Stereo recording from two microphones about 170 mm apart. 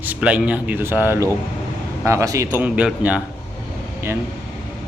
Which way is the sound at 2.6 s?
10° right (ahead or behind).